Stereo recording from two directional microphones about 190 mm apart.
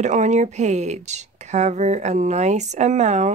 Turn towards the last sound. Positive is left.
turn(degrees=-35)  # may be behind; listen again after turning